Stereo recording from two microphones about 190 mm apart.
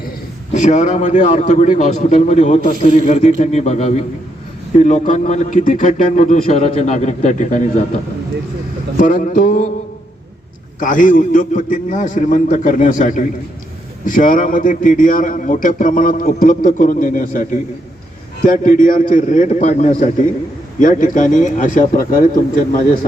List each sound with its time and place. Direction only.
0.5 s a man's voice: 40° left (ahead or behind)
9.0 s a man's voice: 45° left (ahead or behind)
10.8 s a man's voice: 45° left (ahead or behind)